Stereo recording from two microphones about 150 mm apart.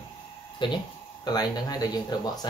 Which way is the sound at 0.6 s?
30° left (ahead or behind).